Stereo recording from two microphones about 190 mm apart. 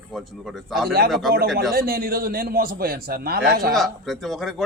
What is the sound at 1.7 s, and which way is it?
A man's voice, 50° right (ahead or behind).